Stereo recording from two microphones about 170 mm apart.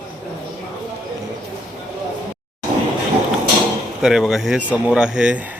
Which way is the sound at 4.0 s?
5° right (ahead or behind).